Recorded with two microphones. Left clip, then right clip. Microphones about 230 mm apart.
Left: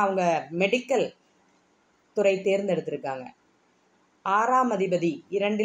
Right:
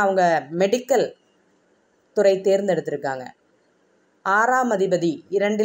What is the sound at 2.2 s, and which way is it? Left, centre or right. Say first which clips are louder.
Speech: right 5 dB; centre.